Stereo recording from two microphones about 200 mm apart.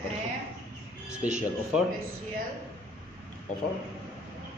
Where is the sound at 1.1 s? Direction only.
5° right (ahead or behind).